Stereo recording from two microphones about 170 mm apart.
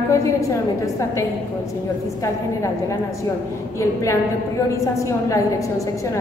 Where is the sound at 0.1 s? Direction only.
20° left (ahead or behind).